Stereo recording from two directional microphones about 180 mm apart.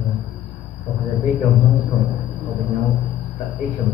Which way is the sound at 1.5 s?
Centre (ahead or behind).